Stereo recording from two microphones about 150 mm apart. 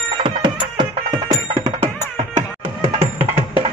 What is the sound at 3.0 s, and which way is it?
Music, 15° right (ahead or behind).